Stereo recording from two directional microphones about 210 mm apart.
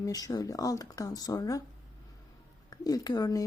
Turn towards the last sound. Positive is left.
turn(degrees=15)  # may be behind; listen again after turning